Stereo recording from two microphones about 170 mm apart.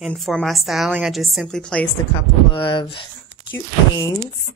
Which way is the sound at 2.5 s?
30° left (ahead or behind).